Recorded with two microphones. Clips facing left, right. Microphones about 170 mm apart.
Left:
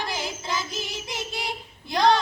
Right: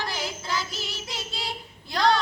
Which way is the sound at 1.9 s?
20° left (ahead or behind).